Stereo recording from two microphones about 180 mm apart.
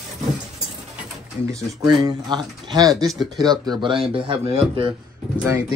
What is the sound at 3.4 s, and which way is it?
Speech, 25° right (ahead or behind).